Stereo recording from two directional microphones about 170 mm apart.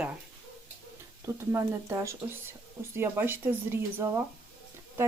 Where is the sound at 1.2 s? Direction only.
15° right (ahead or behind).